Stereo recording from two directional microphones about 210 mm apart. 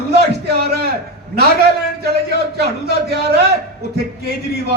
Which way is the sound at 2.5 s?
50° right (ahead or behind).